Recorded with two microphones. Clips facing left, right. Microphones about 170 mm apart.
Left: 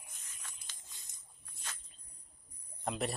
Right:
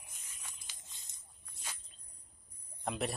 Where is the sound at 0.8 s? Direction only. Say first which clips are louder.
Even; 20° right (ahead or behind).